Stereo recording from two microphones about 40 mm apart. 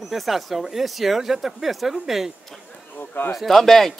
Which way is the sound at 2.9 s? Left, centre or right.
Left.